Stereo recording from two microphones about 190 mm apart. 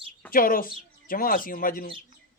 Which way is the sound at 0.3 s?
45° left (ahead or behind).